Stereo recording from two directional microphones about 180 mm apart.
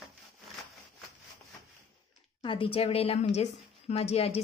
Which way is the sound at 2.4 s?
30° left (ahead or behind).